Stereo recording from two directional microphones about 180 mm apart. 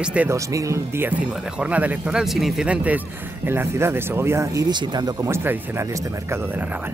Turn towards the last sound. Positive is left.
turn(degrees=-15)  # may be behind; listen again after turning